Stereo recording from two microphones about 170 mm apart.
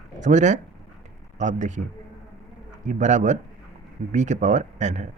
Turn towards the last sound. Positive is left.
turn(degrees=-45)  # may be behind; listen again after turning